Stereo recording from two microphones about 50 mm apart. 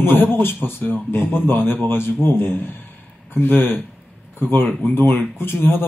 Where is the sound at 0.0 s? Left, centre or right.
Left.